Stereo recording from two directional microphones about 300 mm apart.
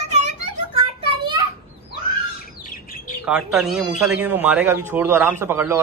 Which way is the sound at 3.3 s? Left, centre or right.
Centre.